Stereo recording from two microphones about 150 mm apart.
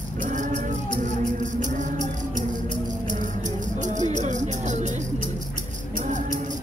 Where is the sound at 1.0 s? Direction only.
55° right (ahead or behind).